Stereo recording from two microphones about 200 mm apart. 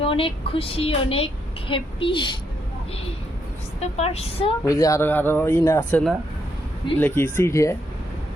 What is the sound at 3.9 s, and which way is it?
Speech, 30° left (ahead or behind).